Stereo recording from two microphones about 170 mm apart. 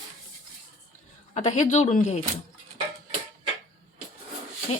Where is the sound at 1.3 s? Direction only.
45° left (ahead or behind).